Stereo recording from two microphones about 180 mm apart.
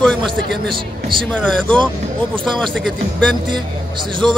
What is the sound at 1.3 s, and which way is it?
Speech, 5° left (ahead or behind).